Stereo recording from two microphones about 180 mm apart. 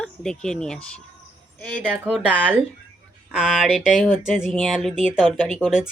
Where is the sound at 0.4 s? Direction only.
5° left (ahead or behind).